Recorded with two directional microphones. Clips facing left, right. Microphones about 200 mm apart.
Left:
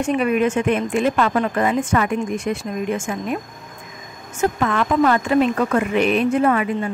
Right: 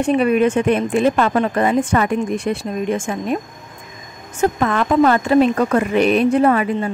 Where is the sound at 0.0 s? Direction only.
35° right (ahead or behind).